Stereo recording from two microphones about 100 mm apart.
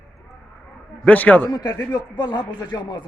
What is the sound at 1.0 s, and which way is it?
Speech, 15° left (ahead or behind).